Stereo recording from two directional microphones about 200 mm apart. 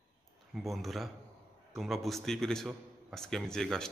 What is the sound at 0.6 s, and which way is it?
A man's voice, centre (ahead or behind).